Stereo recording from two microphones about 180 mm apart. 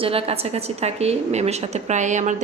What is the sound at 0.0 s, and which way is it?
A woman's voice, 30° right (ahead or behind).